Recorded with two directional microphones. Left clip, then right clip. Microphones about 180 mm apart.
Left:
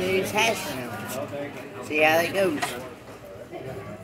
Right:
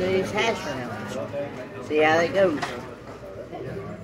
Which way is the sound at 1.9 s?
10° left (ahead or behind).